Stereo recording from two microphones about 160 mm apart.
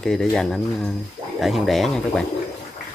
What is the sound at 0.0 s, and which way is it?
Speech, 5° left (ahead or behind).